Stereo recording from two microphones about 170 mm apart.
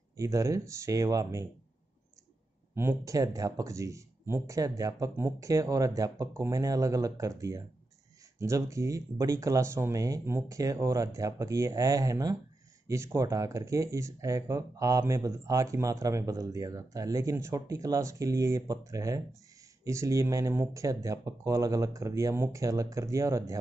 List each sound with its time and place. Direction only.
0.2 s speech: 20° right (ahead or behind)
2.7 s speech: 15° right (ahead or behind)